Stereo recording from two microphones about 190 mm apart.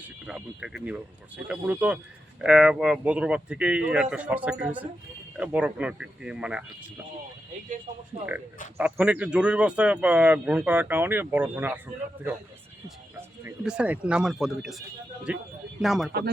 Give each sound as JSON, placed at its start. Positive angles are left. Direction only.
{"t": 0.3, "sound": "speech", "side_deg": -5}
{"t": 7.9, "sound": "a man's voice", "side_deg": -40}
{"t": 8.8, "sound": "speech", "side_deg": -5}
{"t": 13.1, "sound": "speech", "side_deg": -10}